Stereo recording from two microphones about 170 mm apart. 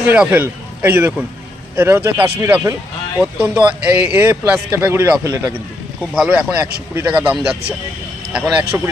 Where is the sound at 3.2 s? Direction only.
5° right (ahead or behind).